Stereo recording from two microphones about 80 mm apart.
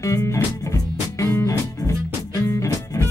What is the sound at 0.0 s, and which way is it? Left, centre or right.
Music, left.